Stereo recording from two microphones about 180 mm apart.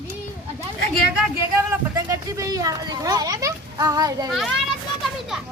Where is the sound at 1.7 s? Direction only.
15° right (ahead or behind).